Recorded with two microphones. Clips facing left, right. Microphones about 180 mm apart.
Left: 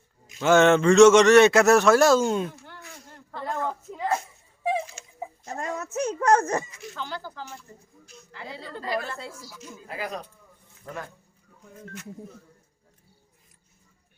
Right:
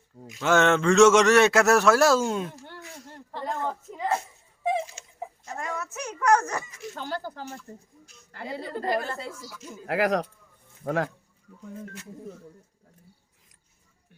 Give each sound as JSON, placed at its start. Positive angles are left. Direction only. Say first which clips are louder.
{"t": 0.3, "sound": "a man's voice", "louder": "left 4 dB", "side_deg": 0}
{"t": 5.5, "sound": "a sound", "louder": "left 2 dB", "side_deg": 35}
{"t": 6.2, "sound": "a child's voice", "louder": "left 1 dB", "side_deg": 25}
{"t": 6.7, "sound": "speech", "louder": "right 2 dB", "side_deg": -45}
{"t": 9.8, "sound": "speech", "louder": "right 10 dB", "side_deg": -90}
{"t": 10.8, "sound": "speech", "louder": "right 10 dB", "side_deg": -80}